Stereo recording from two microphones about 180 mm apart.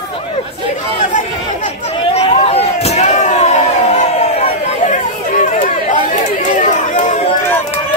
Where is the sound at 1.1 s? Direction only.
40° left (ahead or behind).